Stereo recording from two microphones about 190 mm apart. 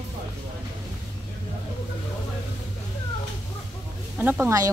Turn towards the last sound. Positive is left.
turn(degrees=-15)  # may be behind; listen again after turning